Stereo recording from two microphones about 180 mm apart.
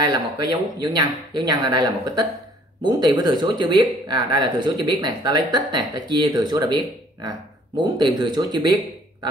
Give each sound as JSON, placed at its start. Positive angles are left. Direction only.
{"t": 0.0, "sound": "speech", "side_deg": -25}